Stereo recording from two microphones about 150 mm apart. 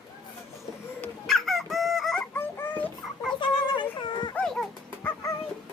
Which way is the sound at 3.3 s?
30° left (ahead or behind).